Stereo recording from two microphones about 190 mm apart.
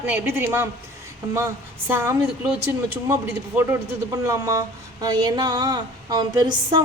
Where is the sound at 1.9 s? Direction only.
10° right (ahead or behind).